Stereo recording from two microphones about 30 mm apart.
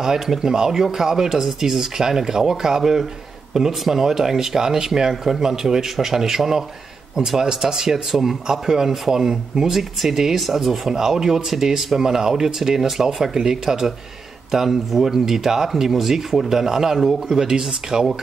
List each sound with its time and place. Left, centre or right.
0.4 s speech: centre
10.3 s speech: centre
10.9 s speech: centre
17.0 s speech: centre
17.4 s speech: right